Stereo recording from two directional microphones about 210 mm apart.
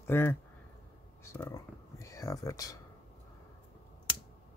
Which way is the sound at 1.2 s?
10° left (ahead or behind).